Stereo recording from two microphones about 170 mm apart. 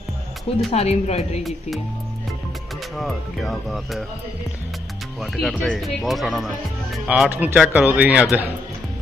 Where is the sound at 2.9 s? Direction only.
Centre (ahead or behind).